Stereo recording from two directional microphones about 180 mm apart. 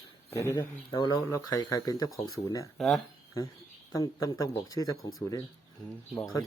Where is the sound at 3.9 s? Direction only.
20° left (ahead or behind).